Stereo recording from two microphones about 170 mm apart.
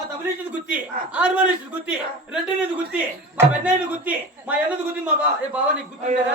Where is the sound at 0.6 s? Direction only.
5° right (ahead or behind).